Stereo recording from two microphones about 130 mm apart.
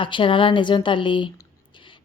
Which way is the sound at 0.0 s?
40° left (ahead or behind).